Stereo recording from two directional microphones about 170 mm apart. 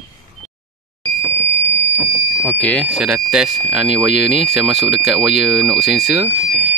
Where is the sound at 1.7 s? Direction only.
10° left (ahead or behind).